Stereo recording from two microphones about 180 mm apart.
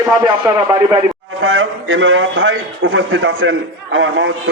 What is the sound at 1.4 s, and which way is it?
A man's voice, 90° right.